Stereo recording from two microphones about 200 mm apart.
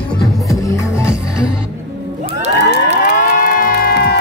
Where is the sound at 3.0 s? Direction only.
45° left (ahead or behind).